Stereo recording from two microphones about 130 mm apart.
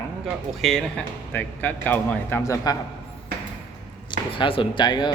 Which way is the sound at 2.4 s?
25° left (ahead or behind).